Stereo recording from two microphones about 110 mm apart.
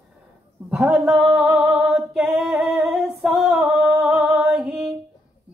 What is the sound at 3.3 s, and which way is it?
Female singing, 15° right (ahead or behind).